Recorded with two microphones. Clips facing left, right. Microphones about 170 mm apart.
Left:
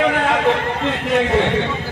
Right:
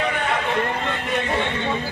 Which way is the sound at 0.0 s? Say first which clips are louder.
Left 7 dB; 90° left.